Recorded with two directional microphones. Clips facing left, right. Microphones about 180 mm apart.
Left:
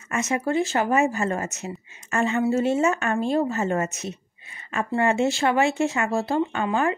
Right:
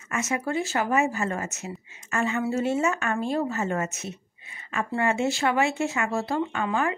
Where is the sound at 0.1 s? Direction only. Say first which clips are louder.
Left 3 dB; 30° left (ahead or behind).